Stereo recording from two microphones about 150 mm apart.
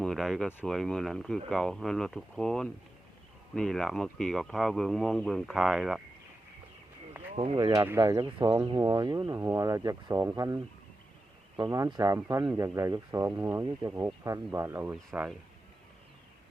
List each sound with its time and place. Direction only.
0.0 s speech: centre (ahead or behind)
7.5 s a man's voice: 25° right (ahead or behind)